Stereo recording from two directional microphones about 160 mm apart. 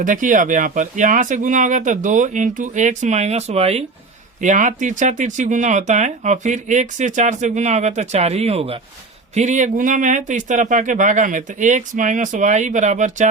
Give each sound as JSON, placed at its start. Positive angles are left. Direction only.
{"t": 0.0, "sound": "speech", "side_deg": -55}
{"t": 4.4, "sound": "speech", "side_deg": -50}